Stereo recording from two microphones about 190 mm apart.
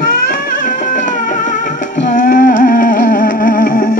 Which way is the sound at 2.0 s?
45° left (ahead or behind).